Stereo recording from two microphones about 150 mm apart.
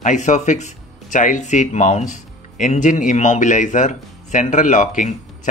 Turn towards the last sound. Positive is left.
turn(degrees=55)  # may be behind; listen again after turning